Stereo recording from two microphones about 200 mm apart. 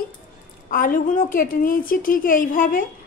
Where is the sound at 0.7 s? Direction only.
45° left (ahead or behind).